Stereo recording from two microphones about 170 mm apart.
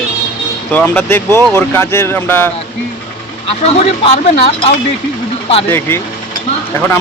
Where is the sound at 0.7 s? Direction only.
10° left (ahead or behind).